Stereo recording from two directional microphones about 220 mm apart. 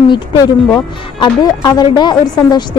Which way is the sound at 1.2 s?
15° left (ahead or behind).